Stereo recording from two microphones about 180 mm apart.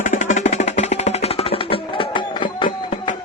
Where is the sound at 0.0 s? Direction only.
45° left (ahead or behind).